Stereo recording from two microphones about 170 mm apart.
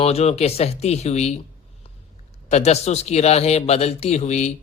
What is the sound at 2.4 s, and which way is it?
Speech, 40° left (ahead or behind).